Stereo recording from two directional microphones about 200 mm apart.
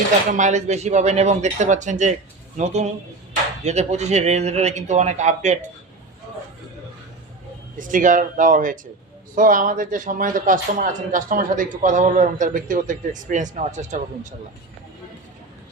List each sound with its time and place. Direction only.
0.3 s speech: 40° right (ahead or behind)
7.8 s speech: 40° right (ahead or behind)